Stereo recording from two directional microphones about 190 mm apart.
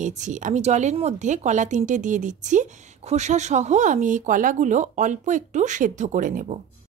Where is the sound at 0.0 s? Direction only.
40° right (ahead or behind).